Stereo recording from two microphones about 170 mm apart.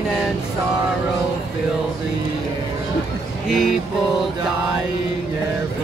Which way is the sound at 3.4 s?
Centre (ahead or behind).